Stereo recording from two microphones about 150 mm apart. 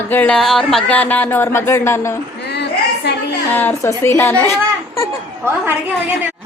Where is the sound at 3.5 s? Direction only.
15° left (ahead or behind).